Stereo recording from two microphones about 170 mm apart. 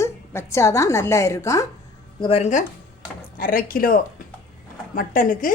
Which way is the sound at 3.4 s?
55° left (ahead or behind).